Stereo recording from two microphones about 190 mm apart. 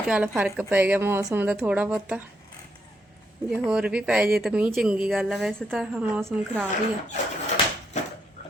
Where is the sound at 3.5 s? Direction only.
5° right (ahead or behind).